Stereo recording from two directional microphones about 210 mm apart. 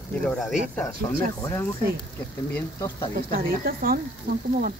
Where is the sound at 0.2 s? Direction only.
Centre (ahead or behind).